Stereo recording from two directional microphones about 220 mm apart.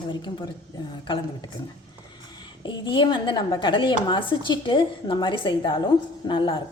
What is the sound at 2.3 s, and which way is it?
A woman's voice, 20° left (ahead or behind).